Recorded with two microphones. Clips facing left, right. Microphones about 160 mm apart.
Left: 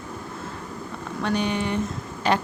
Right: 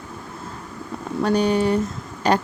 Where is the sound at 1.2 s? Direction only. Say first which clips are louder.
Right 6 dB; 40° right (ahead or behind).